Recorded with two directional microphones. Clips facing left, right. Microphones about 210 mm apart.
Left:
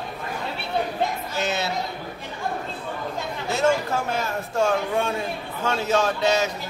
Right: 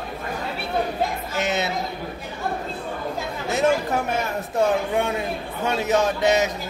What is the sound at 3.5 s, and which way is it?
A man's voice, 20° right (ahead or behind).